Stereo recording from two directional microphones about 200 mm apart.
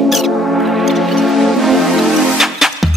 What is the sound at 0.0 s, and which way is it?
Music, centre (ahead or behind).